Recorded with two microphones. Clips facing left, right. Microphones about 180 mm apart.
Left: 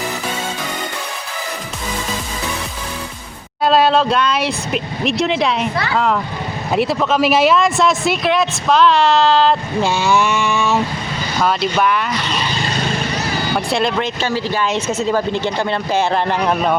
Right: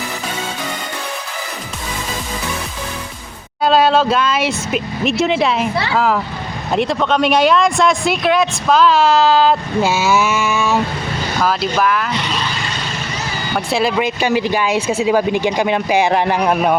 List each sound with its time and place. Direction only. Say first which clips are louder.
3.6 s speech: right 1 dB; centre (ahead or behind)
13.7 s speech: right 5 dB; 5° right (ahead or behind)